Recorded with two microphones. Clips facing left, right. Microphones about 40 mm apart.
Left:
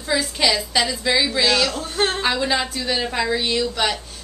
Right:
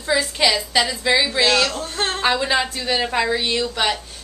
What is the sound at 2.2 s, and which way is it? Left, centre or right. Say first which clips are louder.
A woman's voice: right 2 dB; centre.